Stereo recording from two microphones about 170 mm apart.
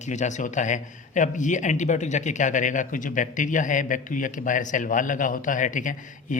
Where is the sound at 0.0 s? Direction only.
45° left (ahead or behind).